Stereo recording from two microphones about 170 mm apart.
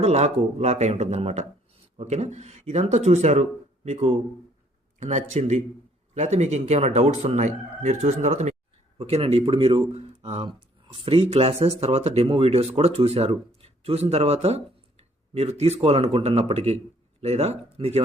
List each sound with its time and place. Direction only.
0.0 s speech: 40° right (ahead or behind)